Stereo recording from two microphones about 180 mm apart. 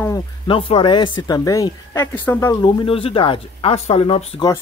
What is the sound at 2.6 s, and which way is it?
Speech, 30° left (ahead or behind).